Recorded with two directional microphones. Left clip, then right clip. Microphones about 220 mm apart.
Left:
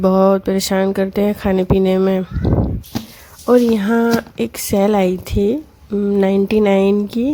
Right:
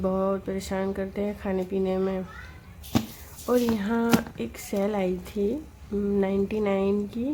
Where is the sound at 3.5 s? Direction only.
40° left (ahead or behind).